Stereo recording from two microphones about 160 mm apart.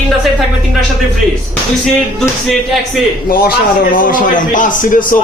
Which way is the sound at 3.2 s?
70° left (ahead or behind).